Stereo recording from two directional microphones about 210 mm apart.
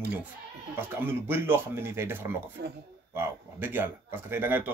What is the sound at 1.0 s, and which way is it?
Speech, 10° right (ahead or behind).